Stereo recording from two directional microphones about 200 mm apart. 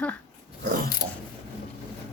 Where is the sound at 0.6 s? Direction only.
45° right (ahead or behind).